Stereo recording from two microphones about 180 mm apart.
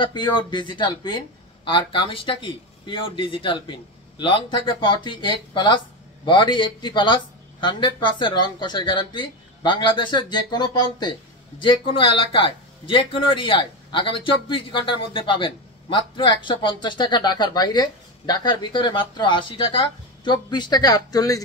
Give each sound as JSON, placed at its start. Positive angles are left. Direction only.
{"t": 0.0, "sound": "speech", "side_deg": 25}